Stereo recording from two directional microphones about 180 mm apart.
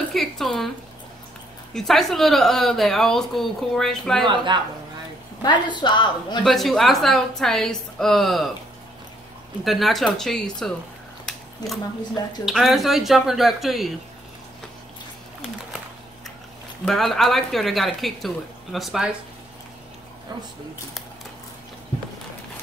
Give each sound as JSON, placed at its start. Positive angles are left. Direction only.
{"t": 0.1, "sound": "a sound", "side_deg": 0}
{"t": 1.7, "sound": "speech", "side_deg": 0}
{"t": 4.5, "sound": "speech", "side_deg": -25}
{"t": 5.4, "sound": "a woman's voice", "side_deg": 25}
{"t": 6.4, "sound": "speech", "side_deg": 0}
{"t": 9.7, "sound": "speech", "side_deg": 0}
{"t": 11.2, "sound": "a sound", "side_deg": 0}
{"t": 12.4, "sound": "speech", "side_deg": 0}
{"t": 16.8, "sound": "speech", "side_deg": 0}